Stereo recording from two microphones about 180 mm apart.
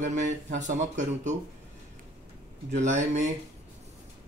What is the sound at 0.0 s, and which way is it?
Speech, 45° right (ahead or behind).